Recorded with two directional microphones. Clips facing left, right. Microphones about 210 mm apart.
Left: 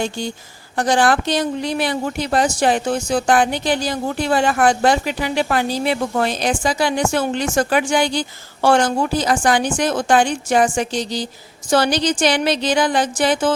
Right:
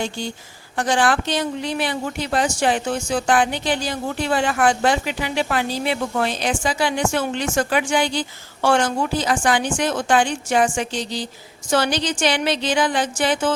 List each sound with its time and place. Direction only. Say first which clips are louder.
0.8 s speech: left 3 dB; 40° left (ahead or behind)